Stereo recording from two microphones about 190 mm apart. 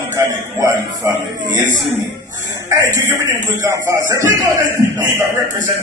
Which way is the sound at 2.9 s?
15° right (ahead or behind).